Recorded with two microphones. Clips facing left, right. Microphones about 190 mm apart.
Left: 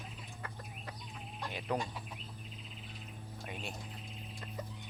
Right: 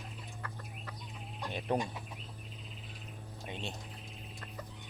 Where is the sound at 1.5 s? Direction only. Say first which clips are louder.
Right 3 dB; 25° right (ahead or behind).